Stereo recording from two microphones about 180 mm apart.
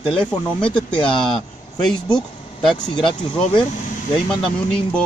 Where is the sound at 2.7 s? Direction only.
25° left (ahead or behind).